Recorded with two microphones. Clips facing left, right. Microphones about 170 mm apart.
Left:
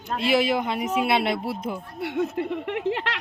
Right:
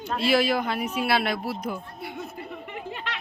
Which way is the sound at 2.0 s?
80° left.